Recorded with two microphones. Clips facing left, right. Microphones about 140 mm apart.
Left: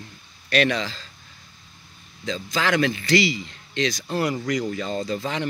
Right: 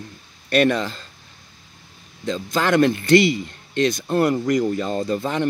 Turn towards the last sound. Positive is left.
turn(degrees=-55)  # may be behind; listen again after turning